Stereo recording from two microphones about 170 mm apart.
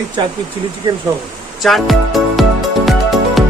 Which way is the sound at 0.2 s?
25° right (ahead or behind).